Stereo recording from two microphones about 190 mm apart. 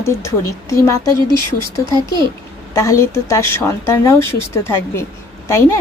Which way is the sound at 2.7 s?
15° left (ahead or behind).